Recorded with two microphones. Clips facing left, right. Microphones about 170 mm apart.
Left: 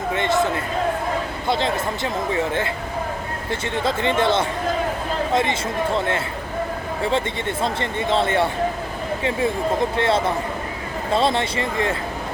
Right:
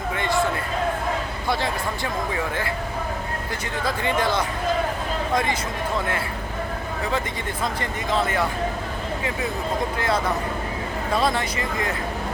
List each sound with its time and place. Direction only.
0.1 s a sound: 20° left (ahead or behind)
1.5 s speech: 20° left (ahead or behind)
7.6 s speech: 30° left (ahead or behind)
10.0 s speech: 25° left (ahead or behind)